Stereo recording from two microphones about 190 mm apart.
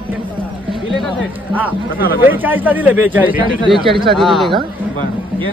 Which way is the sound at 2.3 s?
10° right (ahead or behind).